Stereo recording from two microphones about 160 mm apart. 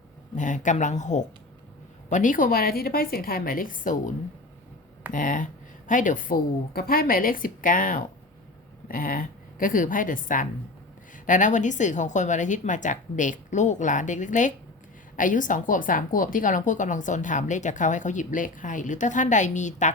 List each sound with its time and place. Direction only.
0.3 s a woman's voice: 50° left (ahead or behind)
5.1 s a woman's voice: 55° left (ahead or behind)